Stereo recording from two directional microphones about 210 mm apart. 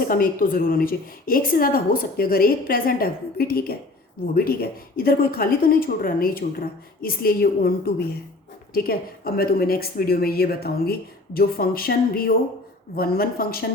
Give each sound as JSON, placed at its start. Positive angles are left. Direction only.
{"t": 0.1, "sound": "a woman's voice", "side_deg": 40}